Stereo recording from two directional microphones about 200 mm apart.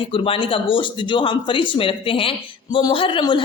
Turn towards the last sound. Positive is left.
turn(degrees=25)  # may be behind; listen again after turning